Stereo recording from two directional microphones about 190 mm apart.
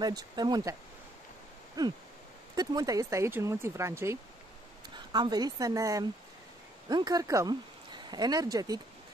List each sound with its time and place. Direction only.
0.0 s speech: 20° right (ahead or behind)
1.8 s speech: 20° right (ahead or behind)